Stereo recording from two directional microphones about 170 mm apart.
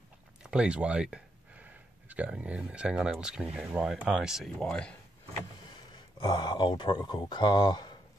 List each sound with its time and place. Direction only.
0.4 s speech: 5° right (ahead or behind)
6.1 s speech: 25° left (ahead or behind)